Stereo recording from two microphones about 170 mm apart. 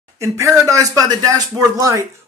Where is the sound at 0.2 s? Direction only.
20° right (ahead or behind).